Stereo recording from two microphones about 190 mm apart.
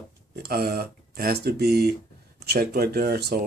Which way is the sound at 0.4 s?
55° right (ahead or behind).